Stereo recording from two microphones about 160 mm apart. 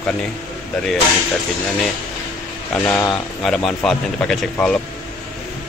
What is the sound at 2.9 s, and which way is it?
Speech, 10° left (ahead or behind).